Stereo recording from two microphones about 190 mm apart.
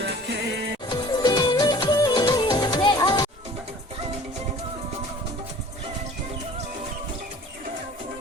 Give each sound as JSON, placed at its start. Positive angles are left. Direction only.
{"t": 0.0, "sound": "music", "side_deg": -65}
{"t": 0.9, "sound": "music", "side_deg": 20}